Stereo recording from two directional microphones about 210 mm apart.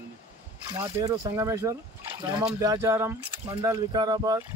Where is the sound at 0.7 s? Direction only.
15° right (ahead or behind).